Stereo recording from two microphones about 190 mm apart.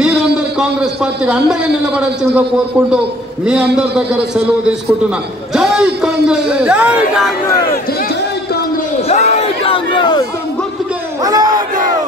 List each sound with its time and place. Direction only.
0.0 s a man's voice: 5° right (ahead or behind)
3.4 s a man's voice: 5° right (ahead or behind)
5.5 s a man's voice: 5° right (ahead or behind)
9.1 s crowd: 35° left (ahead or behind)
11.2 s crowd: 20° right (ahead or behind)